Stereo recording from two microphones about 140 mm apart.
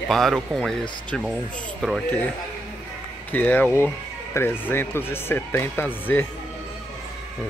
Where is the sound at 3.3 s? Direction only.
10° left (ahead or behind).